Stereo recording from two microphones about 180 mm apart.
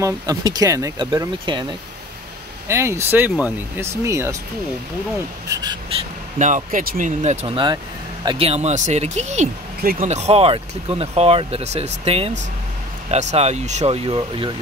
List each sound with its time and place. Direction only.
0.0 s speech: 20° right (ahead or behind)
2.7 s speech: 15° right (ahead or behind)
5.5 s speech: 20° right (ahead or behind)
6.3 s speech: 45° right (ahead or behind)